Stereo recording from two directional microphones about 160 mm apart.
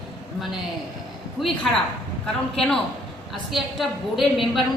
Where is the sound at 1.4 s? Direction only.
Centre (ahead or behind).